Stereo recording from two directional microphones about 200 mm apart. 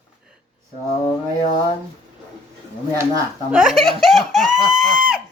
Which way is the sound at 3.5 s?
Centre (ahead or behind).